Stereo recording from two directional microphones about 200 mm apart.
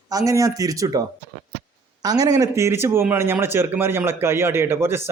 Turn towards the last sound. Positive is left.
turn(degrees=-10)  # may be behind; listen again after turning